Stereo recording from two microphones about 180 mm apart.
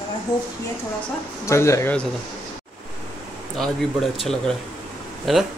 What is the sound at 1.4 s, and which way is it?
Speech, 15° left (ahead or behind).